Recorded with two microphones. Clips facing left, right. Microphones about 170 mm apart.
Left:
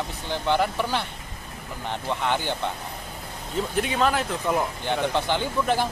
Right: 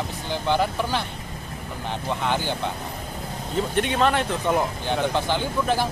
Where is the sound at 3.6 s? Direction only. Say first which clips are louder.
Right 2 dB; centre (ahead or behind).